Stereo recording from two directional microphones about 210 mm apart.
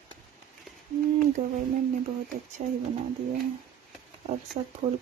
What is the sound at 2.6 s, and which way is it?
Speech, 40° right (ahead or behind).